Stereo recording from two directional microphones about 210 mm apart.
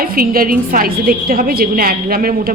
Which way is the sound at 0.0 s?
45° right (ahead or behind).